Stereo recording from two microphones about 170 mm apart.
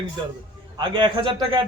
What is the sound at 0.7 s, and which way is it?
Speech, 25° right (ahead or behind).